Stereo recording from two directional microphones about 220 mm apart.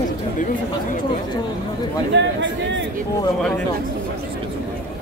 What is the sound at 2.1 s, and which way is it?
Chatter, 55° right (ahead or behind).